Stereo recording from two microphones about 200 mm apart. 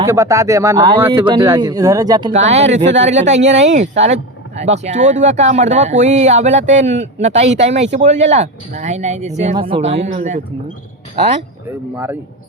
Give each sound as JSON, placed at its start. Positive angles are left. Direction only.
{"t": 0.0, "sound": "speech", "side_deg": -15}
{"t": 2.3, "sound": "speech", "side_deg": -35}